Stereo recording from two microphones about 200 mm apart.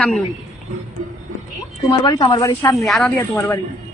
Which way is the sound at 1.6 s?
20° left (ahead or behind).